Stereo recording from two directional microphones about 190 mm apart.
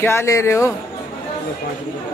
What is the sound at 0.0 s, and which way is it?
Speech, 15° left (ahead or behind).